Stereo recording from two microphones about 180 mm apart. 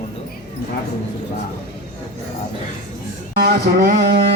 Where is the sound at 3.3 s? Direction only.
65° right (ahead or behind).